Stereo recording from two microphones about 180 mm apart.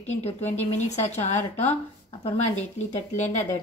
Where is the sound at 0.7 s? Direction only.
40° left (ahead or behind).